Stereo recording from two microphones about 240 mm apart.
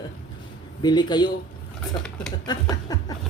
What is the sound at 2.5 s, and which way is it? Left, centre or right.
Chuckle, centre.